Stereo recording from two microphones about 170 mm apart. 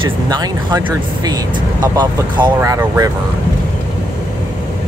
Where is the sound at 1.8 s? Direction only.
25° right (ahead or behind).